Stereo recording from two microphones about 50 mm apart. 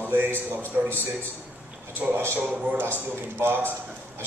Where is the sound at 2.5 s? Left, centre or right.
Right.